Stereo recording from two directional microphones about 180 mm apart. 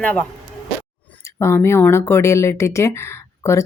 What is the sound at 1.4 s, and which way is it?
Speech, 15° left (ahead or behind).